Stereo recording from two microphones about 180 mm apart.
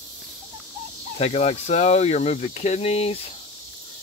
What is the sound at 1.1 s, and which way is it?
Speech, 35° left (ahead or behind).